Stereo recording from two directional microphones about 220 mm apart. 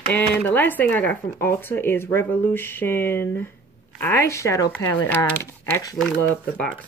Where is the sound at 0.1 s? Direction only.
10° left (ahead or behind).